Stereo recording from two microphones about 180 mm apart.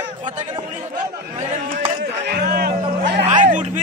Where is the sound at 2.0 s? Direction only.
60° right (ahead or behind).